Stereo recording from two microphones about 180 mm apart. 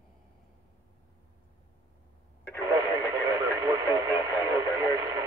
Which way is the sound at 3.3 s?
20° right (ahead or behind).